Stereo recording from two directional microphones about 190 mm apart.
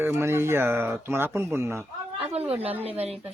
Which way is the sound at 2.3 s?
30° right (ahead or behind).